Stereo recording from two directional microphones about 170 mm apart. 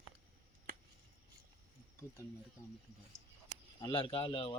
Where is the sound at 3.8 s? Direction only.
25° left (ahead or behind).